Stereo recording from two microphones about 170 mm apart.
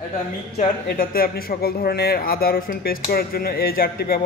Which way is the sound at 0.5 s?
60° left (ahead or behind).